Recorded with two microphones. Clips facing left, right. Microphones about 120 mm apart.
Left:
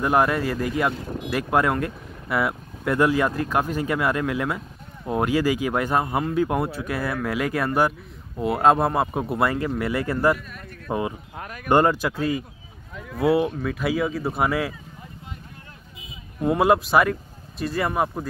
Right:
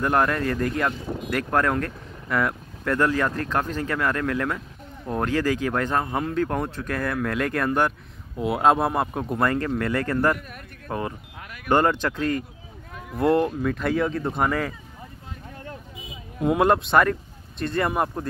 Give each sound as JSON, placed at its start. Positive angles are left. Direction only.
{"t": 0.0, "sound": "speech", "side_deg": 5}
{"t": 11.3, "sound": "a sound", "side_deg": 40}
{"t": 11.7, "sound": "speech", "side_deg": 10}
{"t": 16.3, "sound": "speech", "side_deg": 0}